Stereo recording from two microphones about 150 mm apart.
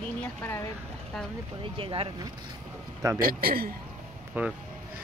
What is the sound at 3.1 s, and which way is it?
Speech, 75° right (ahead or behind).